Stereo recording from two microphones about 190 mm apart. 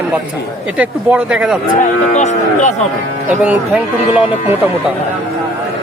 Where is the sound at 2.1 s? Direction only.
40° left (ahead or behind).